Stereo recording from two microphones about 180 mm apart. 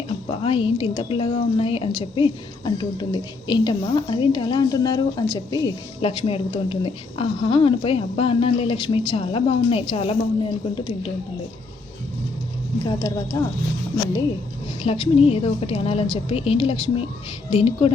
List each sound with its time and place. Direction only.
0.3 s a woman's voice: 30° left (ahead or behind)
12.8 s a woman's voice: 20° left (ahead or behind)
14.8 s a woman's voice: 30° left (ahead or behind)